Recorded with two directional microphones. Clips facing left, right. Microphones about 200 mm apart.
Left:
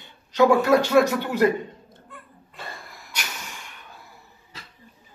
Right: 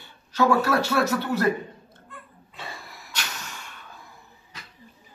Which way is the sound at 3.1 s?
15° left (ahead or behind).